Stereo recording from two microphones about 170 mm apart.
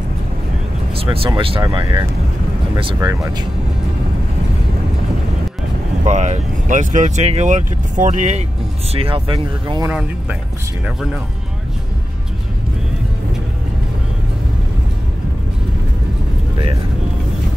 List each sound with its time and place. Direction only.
0.9 s speech: 35° right (ahead or behind)
6.0 s speech: 45° right (ahead or behind)
8.9 s speech: 30° right (ahead or behind)